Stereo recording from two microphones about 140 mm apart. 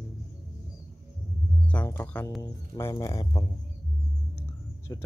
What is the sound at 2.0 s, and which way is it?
Speech, 10° left (ahead or behind).